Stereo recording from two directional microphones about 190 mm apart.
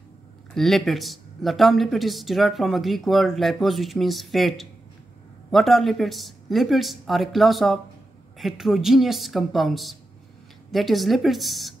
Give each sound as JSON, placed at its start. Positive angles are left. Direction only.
{"t": 0.6, "sound": "speech", "side_deg": 0}